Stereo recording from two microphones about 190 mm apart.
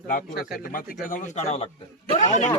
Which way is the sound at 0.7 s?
45° left (ahead or behind).